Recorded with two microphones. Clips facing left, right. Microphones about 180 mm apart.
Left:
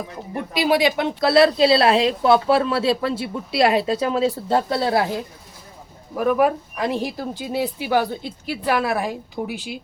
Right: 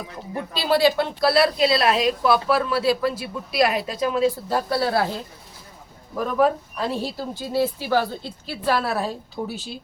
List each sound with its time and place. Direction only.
0.5 s a woman's voice: 15° left (ahead or behind)